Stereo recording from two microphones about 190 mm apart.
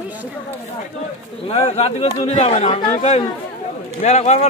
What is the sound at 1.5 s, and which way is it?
Speech, 35° left (ahead or behind).